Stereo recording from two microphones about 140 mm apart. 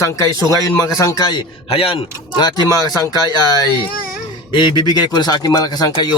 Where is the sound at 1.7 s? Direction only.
45° left (ahead or behind).